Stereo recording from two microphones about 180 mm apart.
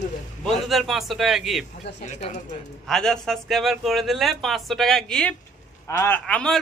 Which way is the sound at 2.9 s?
5° left (ahead or behind).